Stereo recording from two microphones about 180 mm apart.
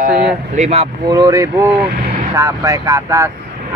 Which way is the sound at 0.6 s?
35° right (ahead or behind).